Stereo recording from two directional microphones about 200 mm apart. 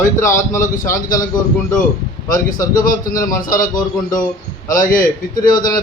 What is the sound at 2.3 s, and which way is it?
A man's voice, 45° left (ahead or behind).